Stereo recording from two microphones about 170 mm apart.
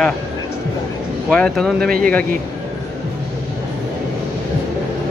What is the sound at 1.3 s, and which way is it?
Speech, 5° left (ahead or behind).